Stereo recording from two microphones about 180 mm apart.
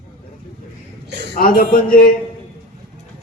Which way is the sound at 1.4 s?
50° left (ahead or behind).